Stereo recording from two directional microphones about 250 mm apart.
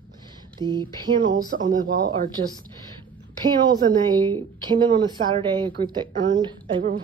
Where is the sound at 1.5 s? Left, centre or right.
Right.